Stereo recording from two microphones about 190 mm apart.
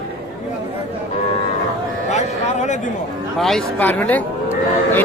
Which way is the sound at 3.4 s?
Centre (ahead or behind).